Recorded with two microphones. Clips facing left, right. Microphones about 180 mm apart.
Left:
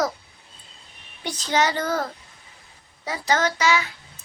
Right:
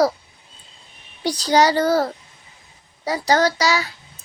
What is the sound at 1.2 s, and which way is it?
A child's voice, 35° right (ahead or behind).